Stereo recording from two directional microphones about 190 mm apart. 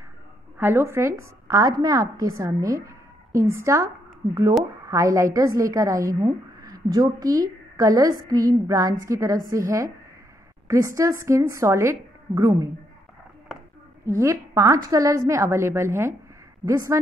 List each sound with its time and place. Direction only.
0.6 s a woman's voice: 10° right (ahead or behind)
14.0 s a woman's voice: 15° right (ahead or behind)